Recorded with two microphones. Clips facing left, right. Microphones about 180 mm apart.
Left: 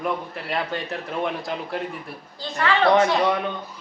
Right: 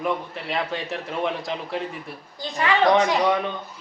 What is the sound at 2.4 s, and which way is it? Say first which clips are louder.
Speech: even; 15° right (ahead or behind).